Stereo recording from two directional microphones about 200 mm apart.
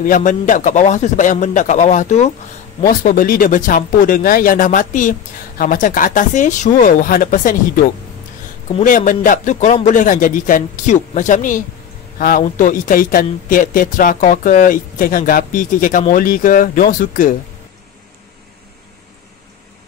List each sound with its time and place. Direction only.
0.0 s a man's voice: 40° left (ahead or behind)
8.8 s a man's voice: 40° left (ahead or behind)